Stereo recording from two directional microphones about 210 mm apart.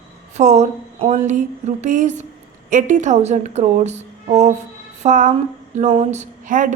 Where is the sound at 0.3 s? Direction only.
35° right (ahead or behind).